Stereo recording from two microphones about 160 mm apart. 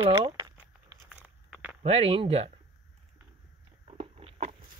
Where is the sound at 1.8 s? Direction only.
40° right (ahead or behind).